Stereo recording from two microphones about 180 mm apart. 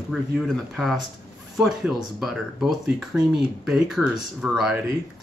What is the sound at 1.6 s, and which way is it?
Speech, centre (ahead or behind).